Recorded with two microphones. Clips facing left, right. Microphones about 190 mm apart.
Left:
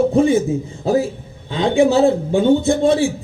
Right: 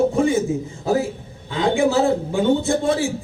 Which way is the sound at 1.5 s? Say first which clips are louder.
Left 4 dB; 25° left (ahead or behind).